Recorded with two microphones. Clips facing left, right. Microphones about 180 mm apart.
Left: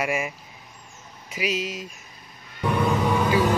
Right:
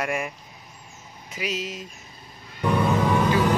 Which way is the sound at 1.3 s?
10° left (ahead or behind).